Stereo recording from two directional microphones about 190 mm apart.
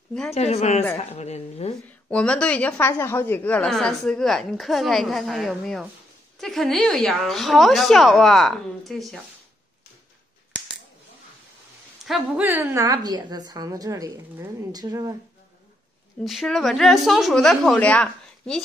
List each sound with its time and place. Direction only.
0.3 s a woman's voice: 35° left (ahead or behind)
2.0 s a woman's voice: 5° left (ahead or behind)
12.0 s a woman's voice: 5° right (ahead or behind)
16.3 s a woman's voice: centre (ahead or behind)